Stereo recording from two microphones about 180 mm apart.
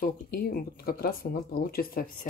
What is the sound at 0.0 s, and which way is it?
Speech, 55° left (ahead or behind).